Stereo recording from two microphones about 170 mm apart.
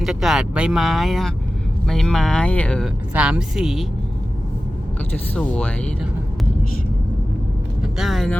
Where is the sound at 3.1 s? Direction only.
5° right (ahead or behind).